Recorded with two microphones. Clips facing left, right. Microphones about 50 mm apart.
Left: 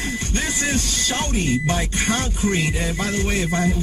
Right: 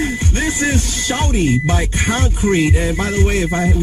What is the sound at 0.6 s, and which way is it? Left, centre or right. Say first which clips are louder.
Speech: right 4 dB; right.